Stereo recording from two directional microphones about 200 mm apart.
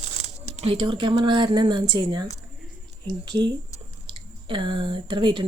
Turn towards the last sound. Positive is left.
turn(degrees=-25)  # may be behind; listen again after turning